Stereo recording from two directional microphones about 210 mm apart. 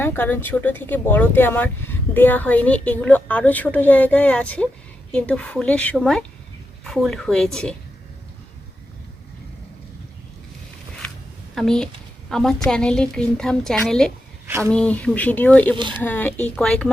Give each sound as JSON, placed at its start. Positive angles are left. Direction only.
{"t": 0.0, "sound": "a woman's voice", "side_deg": 10}
{"t": 11.5, "sound": "a woman's voice", "side_deg": 0}
{"t": 14.4, "sound": "speech", "side_deg": -15}
{"t": 14.7, "sound": "speech", "side_deg": 5}
{"t": 15.7, "sound": "speech", "side_deg": -25}
{"t": 16.0, "sound": "speech", "side_deg": 10}